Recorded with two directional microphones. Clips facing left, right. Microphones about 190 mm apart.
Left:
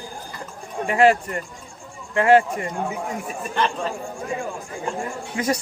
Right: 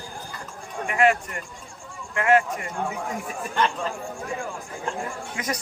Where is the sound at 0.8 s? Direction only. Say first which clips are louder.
Left 4 dB; 30° left (ahead or behind).